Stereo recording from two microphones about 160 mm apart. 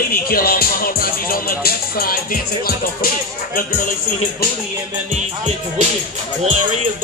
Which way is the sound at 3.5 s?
60° left (ahead or behind).